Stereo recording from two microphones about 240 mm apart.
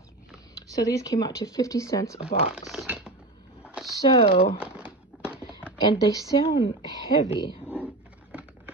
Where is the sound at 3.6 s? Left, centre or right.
Centre.